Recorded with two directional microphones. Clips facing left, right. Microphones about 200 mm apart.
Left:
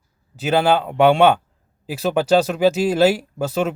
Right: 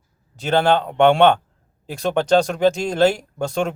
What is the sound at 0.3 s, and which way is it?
A man's voice, 5° left (ahead or behind).